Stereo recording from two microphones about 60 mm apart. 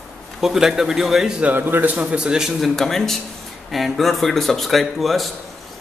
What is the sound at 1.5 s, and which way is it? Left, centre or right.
Speech, right.